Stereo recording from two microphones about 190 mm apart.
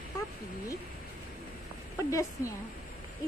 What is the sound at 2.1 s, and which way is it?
Speech, 15° left (ahead or behind).